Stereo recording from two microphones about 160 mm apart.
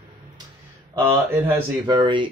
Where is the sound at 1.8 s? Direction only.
30° right (ahead or behind).